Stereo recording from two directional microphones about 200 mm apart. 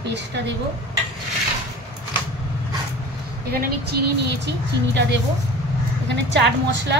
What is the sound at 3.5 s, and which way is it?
A woman's voice, 50° right (ahead or behind).